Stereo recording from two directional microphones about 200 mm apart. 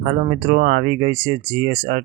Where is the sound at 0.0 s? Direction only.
45° right (ahead or behind).